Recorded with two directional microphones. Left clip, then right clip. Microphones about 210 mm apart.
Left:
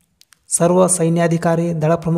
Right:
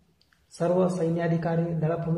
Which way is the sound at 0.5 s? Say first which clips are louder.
Left 10 dB; 50° left (ahead or behind).